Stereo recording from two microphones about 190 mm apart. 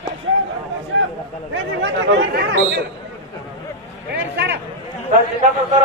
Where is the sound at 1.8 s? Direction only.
70° right (ahead or behind).